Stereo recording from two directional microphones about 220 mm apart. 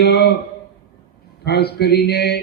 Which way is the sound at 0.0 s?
45° left (ahead or behind).